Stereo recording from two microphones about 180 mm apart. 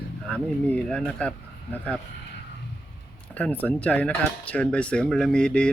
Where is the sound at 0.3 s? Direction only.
5° left (ahead or behind).